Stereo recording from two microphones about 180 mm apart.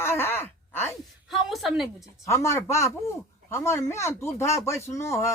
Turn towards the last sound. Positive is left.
turn(degrees=15)  # may be behind; listen again after turning